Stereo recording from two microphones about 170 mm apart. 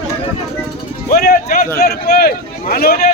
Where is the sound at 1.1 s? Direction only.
60° left (ahead or behind).